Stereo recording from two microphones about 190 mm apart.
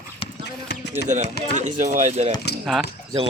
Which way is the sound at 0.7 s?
60° left (ahead or behind).